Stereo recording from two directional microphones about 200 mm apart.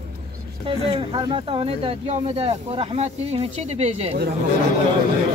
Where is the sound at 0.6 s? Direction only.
25° right (ahead or behind).